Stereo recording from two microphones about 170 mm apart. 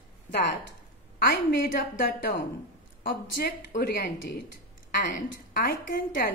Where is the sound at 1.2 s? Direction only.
60° left (ahead or behind).